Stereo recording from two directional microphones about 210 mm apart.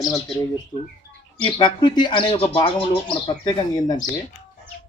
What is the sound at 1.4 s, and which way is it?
Speech, 20° left (ahead or behind).